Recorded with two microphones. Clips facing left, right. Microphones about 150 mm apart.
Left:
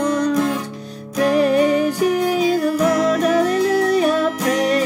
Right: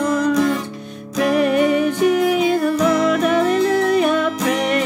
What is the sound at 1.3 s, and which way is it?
Music, 35° left (ahead or behind).